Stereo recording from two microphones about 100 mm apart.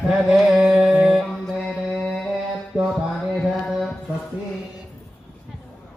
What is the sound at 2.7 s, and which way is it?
Music, centre (ahead or behind).